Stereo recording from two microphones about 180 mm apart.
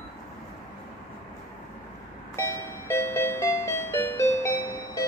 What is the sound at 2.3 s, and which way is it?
Music, 15° left (ahead or behind).